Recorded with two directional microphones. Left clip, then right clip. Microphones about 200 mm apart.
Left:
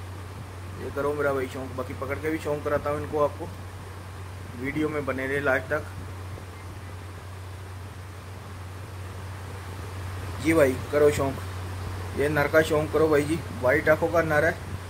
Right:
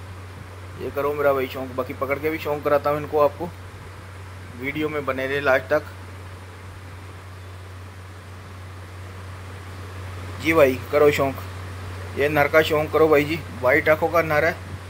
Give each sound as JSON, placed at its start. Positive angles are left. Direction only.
{"t": 0.9, "sound": "a man's voice", "side_deg": -15}
{"t": 4.6, "sound": "speech", "side_deg": -15}
{"t": 10.4, "sound": "a man's voice", "side_deg": -15}